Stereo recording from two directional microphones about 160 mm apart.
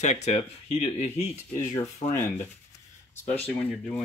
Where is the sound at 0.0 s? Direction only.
45° left (ahead or behind).